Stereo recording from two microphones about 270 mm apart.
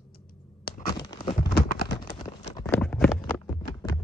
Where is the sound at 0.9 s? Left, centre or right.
Centre.